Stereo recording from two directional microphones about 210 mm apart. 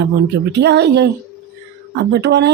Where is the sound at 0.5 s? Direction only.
55° right (ahead or behind).